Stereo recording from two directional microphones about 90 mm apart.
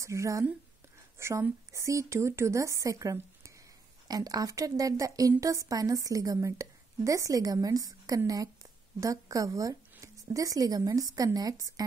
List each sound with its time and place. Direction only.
0.0 s a woman's voice: 35° right (ahead or behind)